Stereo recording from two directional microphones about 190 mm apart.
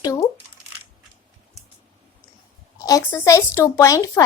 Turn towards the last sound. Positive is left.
turn(degrees=15)  # may be behind; listen again after turning